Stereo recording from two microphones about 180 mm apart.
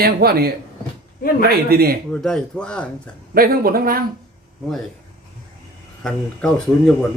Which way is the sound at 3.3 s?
55° right (ahead or behind).